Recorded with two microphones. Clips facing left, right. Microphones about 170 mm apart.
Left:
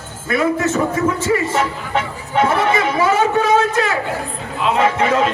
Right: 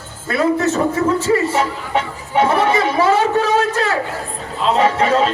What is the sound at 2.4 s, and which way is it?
Speech, 35° right (ahead or behind).